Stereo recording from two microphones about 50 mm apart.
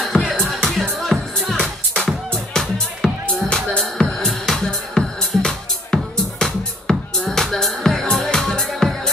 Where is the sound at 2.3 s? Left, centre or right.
Centre.